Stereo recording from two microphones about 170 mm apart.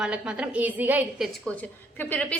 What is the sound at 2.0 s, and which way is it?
Speech, 10° left (ahead or behind).